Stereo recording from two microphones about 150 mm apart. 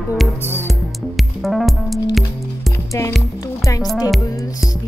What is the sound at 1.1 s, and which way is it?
Music, centre (ahead or behind).